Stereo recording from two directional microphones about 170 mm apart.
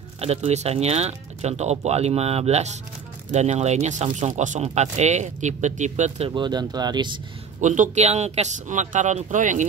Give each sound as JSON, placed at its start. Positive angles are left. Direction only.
{"t": 0.2, "sound": "speech", "side_deg": -40}
{"t": 7.6, "sound": "speech", "side_deg": -45}